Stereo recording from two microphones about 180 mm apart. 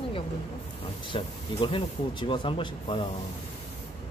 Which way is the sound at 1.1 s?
30° left (ahead or behind).